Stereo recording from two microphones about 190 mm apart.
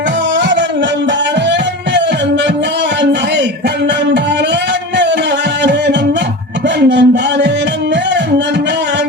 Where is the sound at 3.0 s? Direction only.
65° right (ahead or behind).